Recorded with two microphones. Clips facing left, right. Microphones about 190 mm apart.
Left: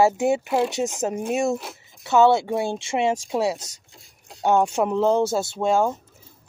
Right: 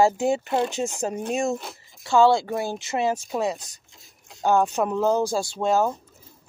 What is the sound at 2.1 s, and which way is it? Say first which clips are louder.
Speech: left 1 dB; 20° left (ahead or behind).